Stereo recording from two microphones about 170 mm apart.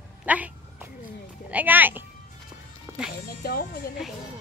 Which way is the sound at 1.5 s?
10° right (ahead or behind).